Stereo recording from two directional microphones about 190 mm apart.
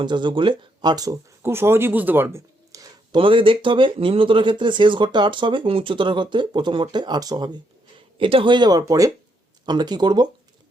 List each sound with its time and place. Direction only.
0.0 s speech: 25° right (ahead or behind)